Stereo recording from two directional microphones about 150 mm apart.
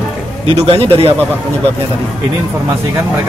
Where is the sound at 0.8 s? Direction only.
40° right (ahead or behind).